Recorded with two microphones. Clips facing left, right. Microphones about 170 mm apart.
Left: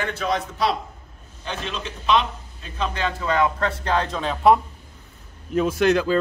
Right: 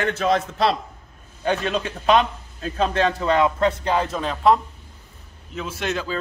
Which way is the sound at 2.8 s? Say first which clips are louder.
Right 5 dB; 35° right (ahead or behind).